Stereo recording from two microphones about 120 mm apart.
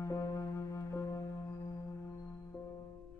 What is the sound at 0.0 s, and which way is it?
Music, 25° left (ahead or behind).